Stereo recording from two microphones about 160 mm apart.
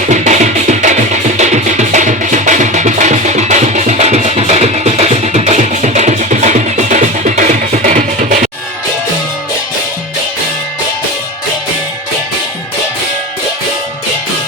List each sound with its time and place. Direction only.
0.1 s music: 50° right (ahead or behind)